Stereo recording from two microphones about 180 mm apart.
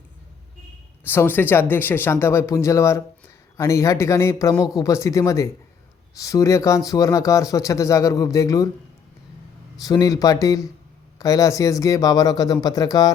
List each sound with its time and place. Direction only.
1.0 s speech: 10° left (ahead or behind)
9.8 s speech: 20° left (ahead or behind)